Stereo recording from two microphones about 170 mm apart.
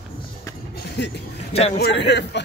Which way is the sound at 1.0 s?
80° left.